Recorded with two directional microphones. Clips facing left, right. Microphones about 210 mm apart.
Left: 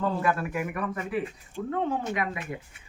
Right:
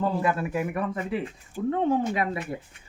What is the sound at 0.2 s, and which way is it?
Speech, 25° right (ahead or behind).